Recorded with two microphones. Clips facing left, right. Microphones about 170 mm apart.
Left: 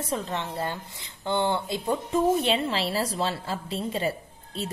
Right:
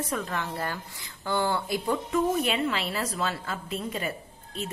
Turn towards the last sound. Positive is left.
turn(degrees=30)  # may be behind; listen again after turning